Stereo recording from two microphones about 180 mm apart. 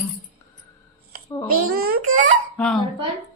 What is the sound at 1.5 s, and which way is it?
Speech, 55° right (ahead or behind).